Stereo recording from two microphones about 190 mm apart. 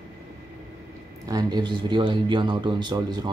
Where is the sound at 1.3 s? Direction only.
20° right (ahead or behind).